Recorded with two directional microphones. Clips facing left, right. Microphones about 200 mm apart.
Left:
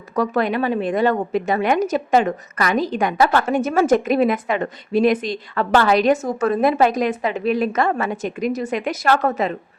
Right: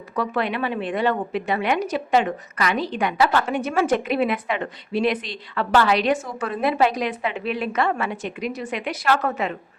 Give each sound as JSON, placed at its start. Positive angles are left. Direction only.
{"t": 0.2, "sound": "a woman's voice", "side_deg": 45}